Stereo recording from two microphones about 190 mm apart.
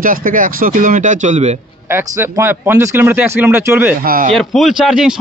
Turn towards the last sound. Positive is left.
turn(degrees=-5)  # may be behind; listen again after turning